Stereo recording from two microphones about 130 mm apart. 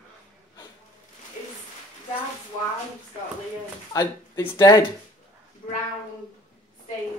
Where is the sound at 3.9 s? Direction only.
30° left (ahead or behind).